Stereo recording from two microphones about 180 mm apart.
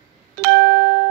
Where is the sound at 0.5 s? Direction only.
65° right (ahead or behind).